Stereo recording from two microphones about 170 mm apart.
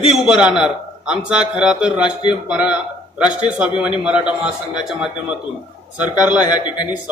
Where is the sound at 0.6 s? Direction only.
5° right (ahead or behind).